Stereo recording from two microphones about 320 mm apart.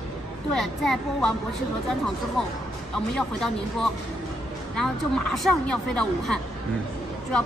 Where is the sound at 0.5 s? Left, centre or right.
Centre.